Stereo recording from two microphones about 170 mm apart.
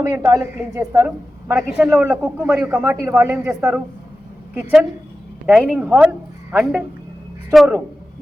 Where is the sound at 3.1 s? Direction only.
5° right (ahead or behind).